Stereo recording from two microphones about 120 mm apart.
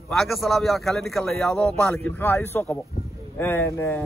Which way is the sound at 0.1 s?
Centre (ahead or behind).